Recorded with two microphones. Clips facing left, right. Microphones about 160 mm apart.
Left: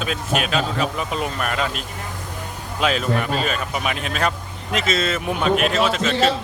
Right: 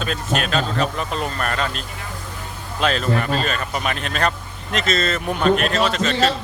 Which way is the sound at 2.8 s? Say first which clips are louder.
Even; 5° left (ahead or behind).